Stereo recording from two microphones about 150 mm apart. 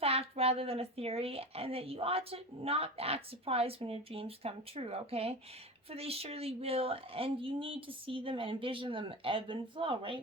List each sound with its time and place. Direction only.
0.0 s speech: 40° right (ahead or behind)